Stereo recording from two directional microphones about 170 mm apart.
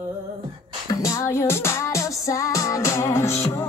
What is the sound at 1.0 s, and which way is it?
Music, 20° left (ahead or behind).